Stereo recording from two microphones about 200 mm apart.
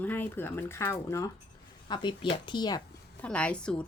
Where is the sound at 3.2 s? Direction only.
5° left (ahead or behind).